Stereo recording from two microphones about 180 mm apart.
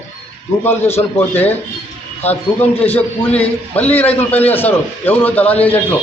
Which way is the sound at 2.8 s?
10° left (ahead or behind).